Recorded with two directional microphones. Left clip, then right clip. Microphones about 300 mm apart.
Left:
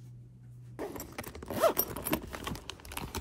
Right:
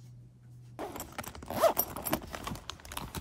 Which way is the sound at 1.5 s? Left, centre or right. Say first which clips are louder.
Right 1 dB; centre.